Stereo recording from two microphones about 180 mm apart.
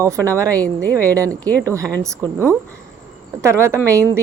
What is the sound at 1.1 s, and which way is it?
Speech, 20° right (ahead or behind).